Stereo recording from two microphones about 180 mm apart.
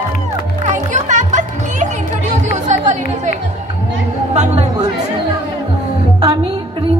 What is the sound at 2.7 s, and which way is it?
Chatter, 40° right (ahead or behind).